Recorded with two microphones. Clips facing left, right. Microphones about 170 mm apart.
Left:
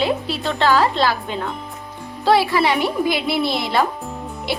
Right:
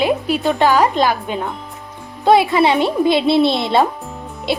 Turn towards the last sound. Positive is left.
turn(degrees=-25)  # may be behind; listen again after turning